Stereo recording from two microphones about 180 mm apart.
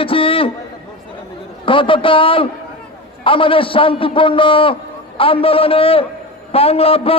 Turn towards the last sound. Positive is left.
turn(degrees=35)  # may be behind; listen again after turning